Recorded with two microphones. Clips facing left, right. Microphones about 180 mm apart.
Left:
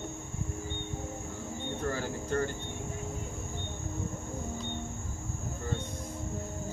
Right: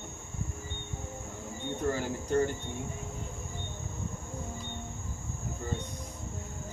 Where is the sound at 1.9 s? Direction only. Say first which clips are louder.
Right 4 dB; 15° right (ahead or behind).